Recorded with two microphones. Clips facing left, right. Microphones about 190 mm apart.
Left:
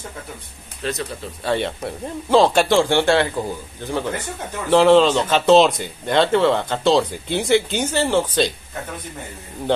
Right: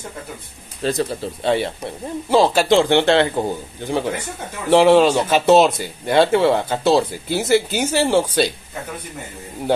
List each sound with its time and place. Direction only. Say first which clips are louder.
0.8 s speech: right 5 dB; 30° right (ahead or behind)
1.6 s speech: even; 5° right (ahead or behind)
2.7 s speech: right 2 dB; 20° right (ahead or behind)